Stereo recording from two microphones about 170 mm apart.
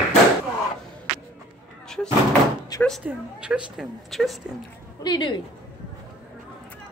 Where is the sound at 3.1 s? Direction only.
5° right (ahead or behind).